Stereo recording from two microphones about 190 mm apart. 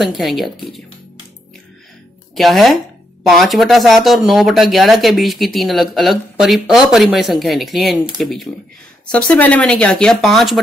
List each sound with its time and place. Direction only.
0.0 s a woman's voice: centre (ahead or behind)
2.3 s speech: centre (ahead or behind)